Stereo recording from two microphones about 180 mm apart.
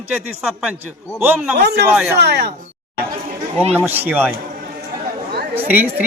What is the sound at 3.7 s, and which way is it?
Speech, 10° right (ahead or behind).